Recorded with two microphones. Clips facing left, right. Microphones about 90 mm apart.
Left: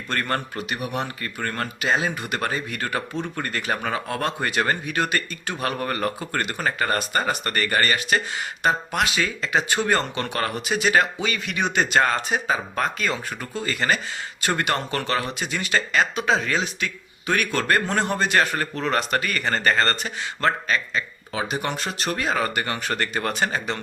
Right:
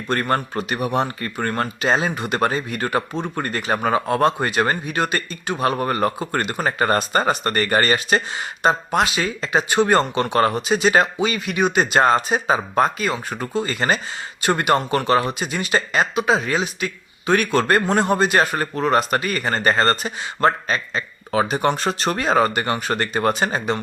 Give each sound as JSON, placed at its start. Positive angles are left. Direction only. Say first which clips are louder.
{"t": 0.1, "sound": "speech", "louder": "right 5 dB", "side_deg": -25}
{"t": 21.3, "sound": "speech", "louder": "right 7 dB", "side_deg": -40}